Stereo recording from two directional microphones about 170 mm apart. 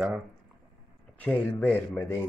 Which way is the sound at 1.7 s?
10° left (ahead or behind).